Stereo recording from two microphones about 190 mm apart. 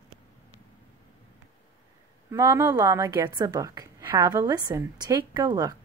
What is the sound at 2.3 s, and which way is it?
A woman's voice, 15° right (ahead or behind).